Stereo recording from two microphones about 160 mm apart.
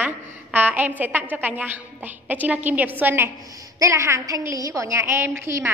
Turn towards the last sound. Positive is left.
turn(degrees=-15)  # may be behind; listen again after turning